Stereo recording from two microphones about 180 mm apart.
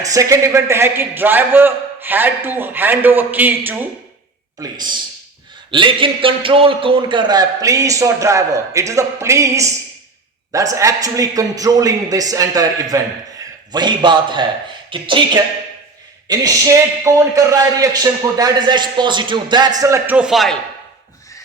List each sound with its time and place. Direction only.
0.0 s a man's voice: 20° right (ahead or behind); by 20.6 s centre (ahead or behind)